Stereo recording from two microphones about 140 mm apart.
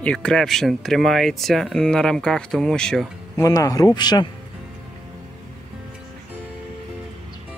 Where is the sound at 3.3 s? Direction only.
25° left (ahead or behind).